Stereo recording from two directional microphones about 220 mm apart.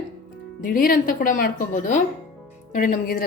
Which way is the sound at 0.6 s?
40° left (ahead or behind).